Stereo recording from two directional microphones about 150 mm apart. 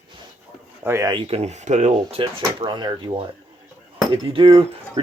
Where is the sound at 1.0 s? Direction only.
35° right (ahead or behind).